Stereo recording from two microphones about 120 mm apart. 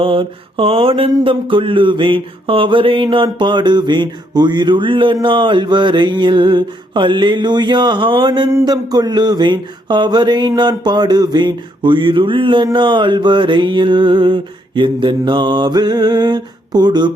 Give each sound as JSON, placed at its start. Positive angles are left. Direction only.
{"t": 0.0, "sound": "mantra", "side_deg": -50}